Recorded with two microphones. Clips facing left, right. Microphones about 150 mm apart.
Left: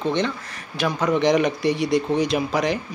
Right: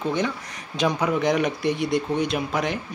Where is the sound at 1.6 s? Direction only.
55° right (ahead or behind).